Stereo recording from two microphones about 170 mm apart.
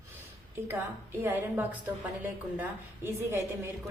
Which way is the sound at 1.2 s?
15° right (ahead or behind).